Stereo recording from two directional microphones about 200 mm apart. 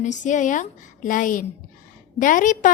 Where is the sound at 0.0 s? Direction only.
35° left (ahead or behind).